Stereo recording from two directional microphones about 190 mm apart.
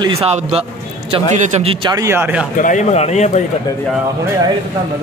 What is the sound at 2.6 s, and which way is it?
Speech, 40° left (ahead or behind).